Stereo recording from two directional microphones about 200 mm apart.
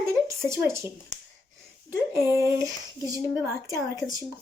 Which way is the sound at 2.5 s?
15° right (ahead or behind).